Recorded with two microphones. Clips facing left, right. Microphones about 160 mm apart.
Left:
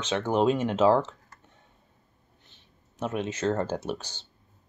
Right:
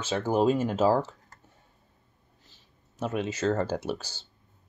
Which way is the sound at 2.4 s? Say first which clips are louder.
Left 1 dB; 60° left (ahead or behind).